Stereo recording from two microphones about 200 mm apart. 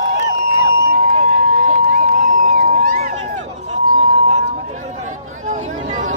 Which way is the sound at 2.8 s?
45° right (ahead or behind).